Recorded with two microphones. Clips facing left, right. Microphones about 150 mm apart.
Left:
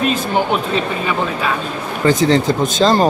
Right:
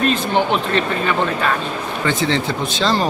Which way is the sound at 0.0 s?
5° left (ahead or behind).